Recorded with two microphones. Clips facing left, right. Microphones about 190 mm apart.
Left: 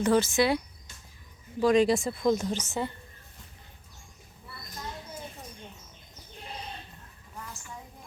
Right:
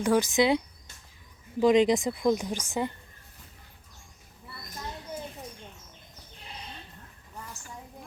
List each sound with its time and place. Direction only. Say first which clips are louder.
0.0 s a woman's voice: even; 15° right (ahead or behind)